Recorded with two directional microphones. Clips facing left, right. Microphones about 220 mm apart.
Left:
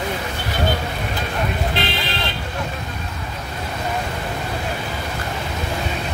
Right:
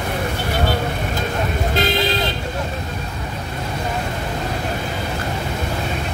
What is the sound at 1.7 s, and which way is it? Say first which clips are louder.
Vehicle: right 5 dB; 45° right (ahead or behind).